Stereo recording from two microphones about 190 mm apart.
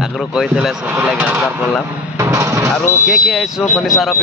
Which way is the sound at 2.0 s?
15° right (ahead or behind).